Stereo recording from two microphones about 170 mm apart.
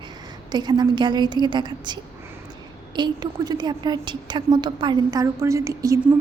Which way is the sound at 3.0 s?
25° right (ahead or behind).